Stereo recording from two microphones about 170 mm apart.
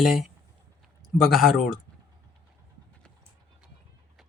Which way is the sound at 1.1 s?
Centre (ahead or behind).